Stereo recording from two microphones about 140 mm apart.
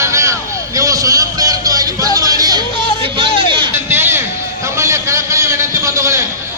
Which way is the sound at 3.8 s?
15° right (ahead or behind).